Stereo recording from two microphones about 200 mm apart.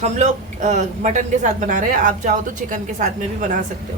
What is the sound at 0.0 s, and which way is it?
A woman's voice, 35° right (ahead or behind).